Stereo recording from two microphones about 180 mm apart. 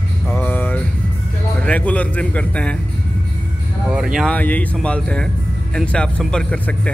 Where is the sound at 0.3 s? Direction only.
10° left (ahead or behind).